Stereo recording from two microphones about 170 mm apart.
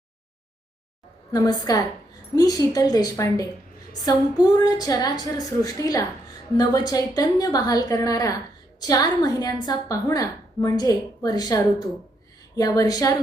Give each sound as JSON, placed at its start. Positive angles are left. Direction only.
{"t": 1.3, "sound": "a woman's voice", "side_deg": 20}